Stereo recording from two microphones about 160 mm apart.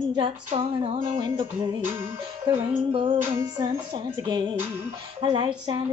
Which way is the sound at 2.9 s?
35° right (ahead or behind).